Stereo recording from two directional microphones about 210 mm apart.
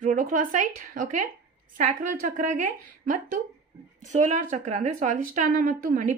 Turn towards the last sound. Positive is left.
turn(degrees=-40)  # may be behind; listen again after turning